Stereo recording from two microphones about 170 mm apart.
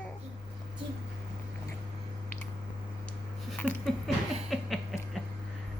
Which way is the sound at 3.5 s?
5° left (ahead or behind).